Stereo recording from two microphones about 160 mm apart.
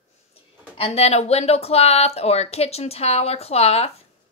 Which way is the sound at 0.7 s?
40° left (ahead or behind).